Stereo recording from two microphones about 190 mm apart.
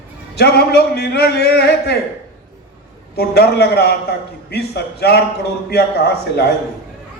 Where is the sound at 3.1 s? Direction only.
55° left (ahead or behind).